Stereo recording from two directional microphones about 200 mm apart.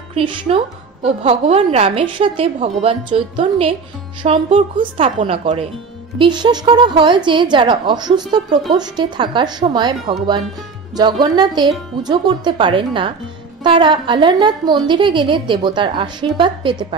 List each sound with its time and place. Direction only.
0.1 s a woman's voice: 25° right (ahead or behind)